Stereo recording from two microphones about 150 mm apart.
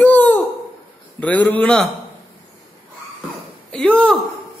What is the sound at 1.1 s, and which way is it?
Speech, 10° left (ahead or behind).